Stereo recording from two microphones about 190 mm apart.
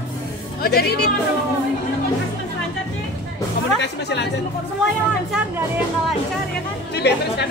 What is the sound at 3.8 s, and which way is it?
Speech, 65° left (ahead or behind).